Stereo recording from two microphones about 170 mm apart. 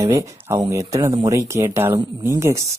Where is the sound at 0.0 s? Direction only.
15° right (ahead or behind).